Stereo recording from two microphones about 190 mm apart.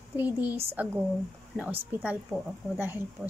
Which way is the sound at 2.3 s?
Centre (ahead or behind).